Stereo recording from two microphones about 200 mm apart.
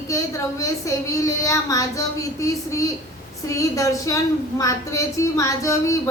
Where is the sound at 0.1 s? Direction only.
15° left (ahead or behind).